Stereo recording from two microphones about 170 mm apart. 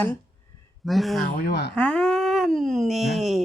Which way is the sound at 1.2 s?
70° left (ahead or behind).